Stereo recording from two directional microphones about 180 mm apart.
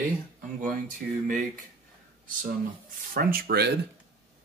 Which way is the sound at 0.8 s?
45° right (ahead or behind).